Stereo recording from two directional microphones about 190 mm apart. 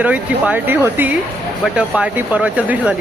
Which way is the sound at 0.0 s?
5° right (ahead or behind).